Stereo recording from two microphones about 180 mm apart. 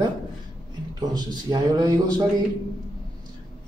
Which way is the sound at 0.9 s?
20° right (ahead or behind).